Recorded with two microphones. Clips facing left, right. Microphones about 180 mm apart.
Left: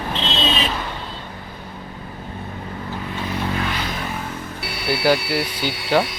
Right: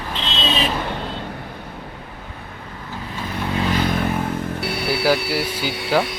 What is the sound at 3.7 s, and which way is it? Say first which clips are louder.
Vehicle: right 7 dB; 50° right (ahead or behind).